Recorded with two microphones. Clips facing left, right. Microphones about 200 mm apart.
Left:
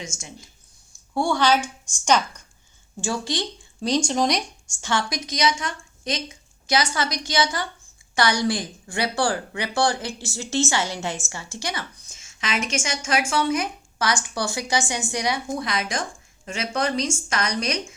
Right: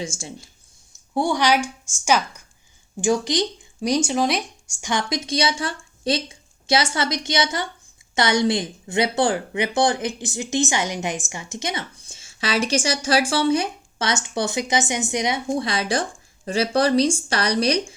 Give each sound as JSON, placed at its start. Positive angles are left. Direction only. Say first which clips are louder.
{"t": 0.0, "sound": "a woman's voice", "louder": "right 6 dB", "side_deg": -30}
{"t": 1.1, "sound": "speech", "louder": "right 1 dB", "side_deg": -15}
{"t": 3.0, "sound": "speech", "louder": "right 6 dB", "side_deg": -20}
{"t": 4.8, "sound": "a woman's voice", "louder": "right 1 dB", "side_deg": -15}